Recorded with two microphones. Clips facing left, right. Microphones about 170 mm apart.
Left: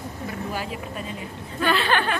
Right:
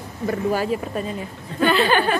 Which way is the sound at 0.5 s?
40° right (ahead or behind).